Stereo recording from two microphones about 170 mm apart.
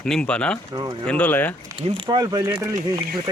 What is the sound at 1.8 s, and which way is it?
Speech, 30° right (ahead or behind).